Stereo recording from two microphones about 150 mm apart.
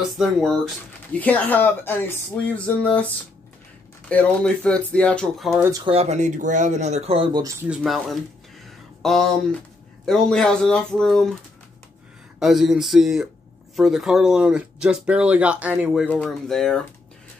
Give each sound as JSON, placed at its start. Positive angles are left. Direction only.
{"t": 0.2, "sound": "speech", "side_deg": 0}
{"t": 1.1, "sound": "speech", "side_deg": 10}
{"t": 4.1, "sound": "speech", "side_deg": 10}
{"t": 5.6, "sound": "speech", "side_deg": -25}
{"t": 5.9, "sound": "speech", "side_deg": -45}
{"t": 7.6, "sound": "speech", "side_deg": -5}
{"t": 12.4, "sound": "speech", "side_deg": 0}